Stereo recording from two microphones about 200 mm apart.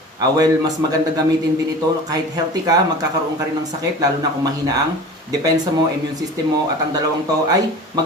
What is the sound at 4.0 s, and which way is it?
Speech, 20° right (ahead or behind).